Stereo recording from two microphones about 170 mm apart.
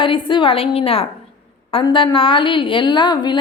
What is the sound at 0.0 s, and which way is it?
A woman's voice, 30° left (ahead or behind).